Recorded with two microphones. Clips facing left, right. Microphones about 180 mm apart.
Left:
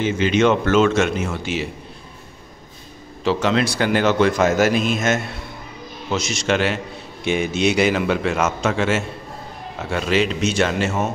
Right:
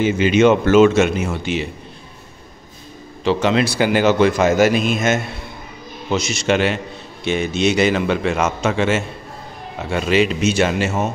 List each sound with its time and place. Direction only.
0.0 s a man's voice: 10° right (ahead or behind)
3.3 s a man's voice: centre (ahead or behind)
7.2 s a man's voice: 10° left (ahead or behind); by 10.9 s 5° right (ahead or behind)